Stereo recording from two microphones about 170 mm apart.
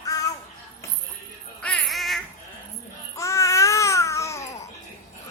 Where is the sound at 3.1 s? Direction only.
20° left (ahead or behind).